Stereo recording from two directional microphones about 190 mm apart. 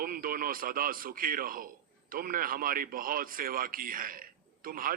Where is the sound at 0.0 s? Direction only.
50° right (ahead or behind).